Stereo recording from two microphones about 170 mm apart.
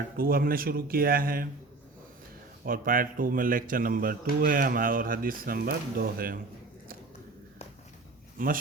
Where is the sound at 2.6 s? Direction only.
55° right (ahead or behind).